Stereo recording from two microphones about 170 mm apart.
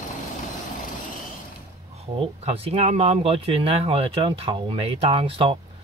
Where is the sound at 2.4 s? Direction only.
35° right (ahead or behind).